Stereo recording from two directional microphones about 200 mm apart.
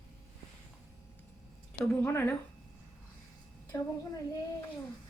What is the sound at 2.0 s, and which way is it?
Speech, 10° left (ahead or behind).